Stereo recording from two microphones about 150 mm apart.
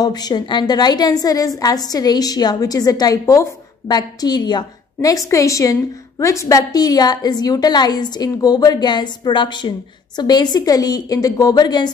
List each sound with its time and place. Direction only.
0.0 s a woman's voice: 25° left (ahead or behind)